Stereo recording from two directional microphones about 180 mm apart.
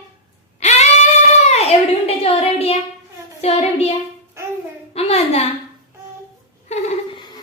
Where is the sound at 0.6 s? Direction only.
40° left (ahead or behind).